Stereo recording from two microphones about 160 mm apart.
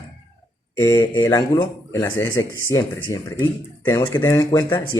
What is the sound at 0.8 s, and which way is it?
A man's voice, 15° left (ahead or behind).